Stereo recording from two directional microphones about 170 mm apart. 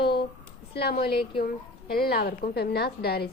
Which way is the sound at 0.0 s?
70° left (ahead or behind).